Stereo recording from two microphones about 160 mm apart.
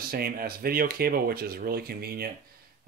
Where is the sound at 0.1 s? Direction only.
70° right (ahead or behind).